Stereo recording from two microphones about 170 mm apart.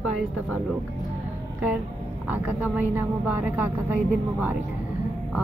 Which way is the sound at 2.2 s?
10° right (ahead or behind).